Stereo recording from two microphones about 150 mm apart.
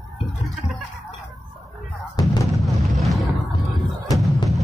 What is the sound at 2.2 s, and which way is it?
Music, 25° left (ahead or behind).